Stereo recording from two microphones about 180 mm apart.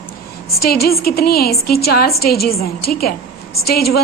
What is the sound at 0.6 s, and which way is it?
A woman's voice, 60° left (ahead or behind).